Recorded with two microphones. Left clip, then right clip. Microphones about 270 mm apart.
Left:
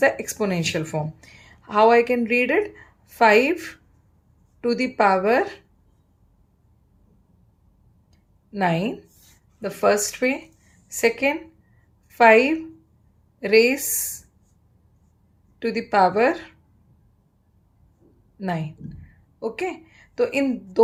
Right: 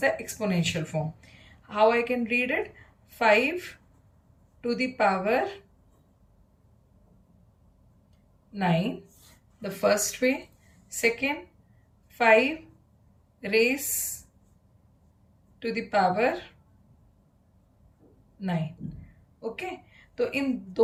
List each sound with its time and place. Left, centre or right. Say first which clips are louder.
0.0 s speech: left 6 dB; centre
8.5 s a woman's voice: left 5 dB; centre
15.5 s speech: left 6 dB; centre
18.3 s a woman's voice: left 5 dB; centre